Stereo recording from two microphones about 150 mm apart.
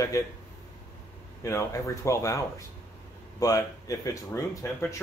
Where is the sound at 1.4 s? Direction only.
20° left (ahead or behind).